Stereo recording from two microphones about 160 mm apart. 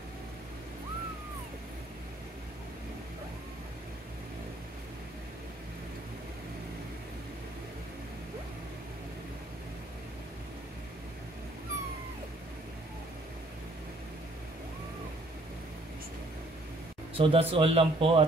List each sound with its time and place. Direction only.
17.1 s speech: 35° right (ahead or behind)